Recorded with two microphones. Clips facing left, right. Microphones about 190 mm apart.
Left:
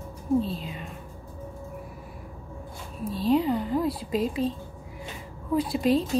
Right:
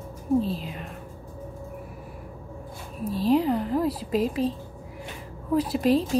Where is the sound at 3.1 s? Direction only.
Centre (ahead or behind).